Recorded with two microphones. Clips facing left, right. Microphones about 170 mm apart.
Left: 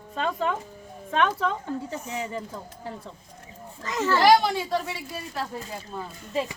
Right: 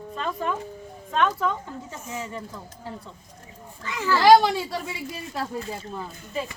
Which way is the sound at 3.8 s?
40° left (ahead or behind).